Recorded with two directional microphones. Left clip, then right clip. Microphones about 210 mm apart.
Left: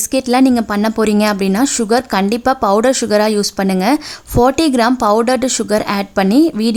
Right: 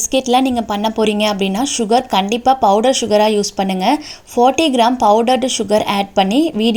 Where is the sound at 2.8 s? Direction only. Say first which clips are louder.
Even; 55° left (ahead or behind).